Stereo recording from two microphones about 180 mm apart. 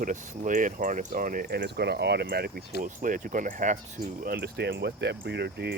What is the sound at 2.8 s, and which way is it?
Speech, 45° right (ahead or behind).